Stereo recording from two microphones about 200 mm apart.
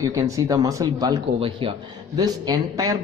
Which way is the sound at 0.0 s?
15° right (ahead or behind).